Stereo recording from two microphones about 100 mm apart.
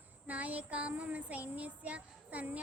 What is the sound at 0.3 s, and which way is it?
Speech, 15° right (ahead or behind).